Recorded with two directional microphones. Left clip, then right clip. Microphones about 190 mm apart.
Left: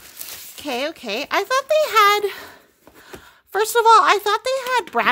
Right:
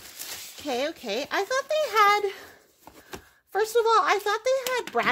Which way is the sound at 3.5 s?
35° left (ahead or behind).